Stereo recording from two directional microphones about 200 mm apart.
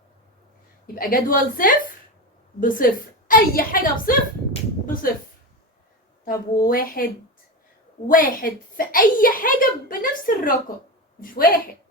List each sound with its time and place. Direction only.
0.9 s a child's voice: 45° left (ahead or behind)
6.2 s a child's voice: 45° left (ahead or behind)